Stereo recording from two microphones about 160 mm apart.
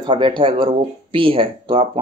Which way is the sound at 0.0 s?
30° right (ahead or behind).